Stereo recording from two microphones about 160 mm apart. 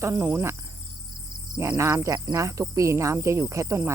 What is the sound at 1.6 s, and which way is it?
Speech, 15° right (ahead or behind).